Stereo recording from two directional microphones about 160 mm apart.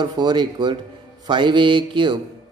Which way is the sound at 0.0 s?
25° right (ahead or behind).